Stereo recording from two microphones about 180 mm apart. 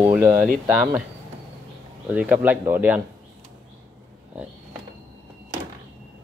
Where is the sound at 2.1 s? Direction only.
10° right (ahead or behind).